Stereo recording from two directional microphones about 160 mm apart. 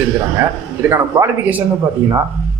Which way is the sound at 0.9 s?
15° right (ahead or behind).